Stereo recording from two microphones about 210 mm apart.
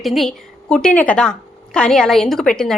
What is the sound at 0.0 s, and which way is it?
A woman's voice, centre (ahead or behind).